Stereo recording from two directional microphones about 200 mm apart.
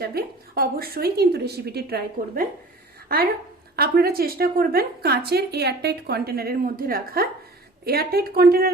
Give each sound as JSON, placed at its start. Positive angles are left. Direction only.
{"t": 0.0, "sound": "a woman's voice", "side_deg": -50}